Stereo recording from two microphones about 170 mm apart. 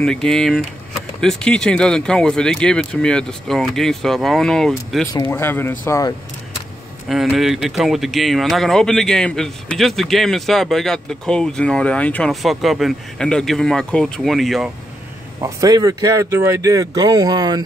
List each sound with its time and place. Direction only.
0.0 s speech: 5° left (ahead or behind)
5.0 s speech: 25° left (ahead or behind)
5.3 s speech: 15° left (ahead or behind)
7.1 s speech: centre (ahead or behind)
15.4 s speech: 20° right (ahead or behind)